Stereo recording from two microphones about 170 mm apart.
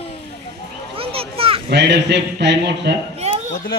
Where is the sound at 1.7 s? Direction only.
85° right.